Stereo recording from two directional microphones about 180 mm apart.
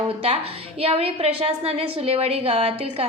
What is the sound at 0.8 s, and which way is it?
A woman's voice, 35° right (ahead or behind).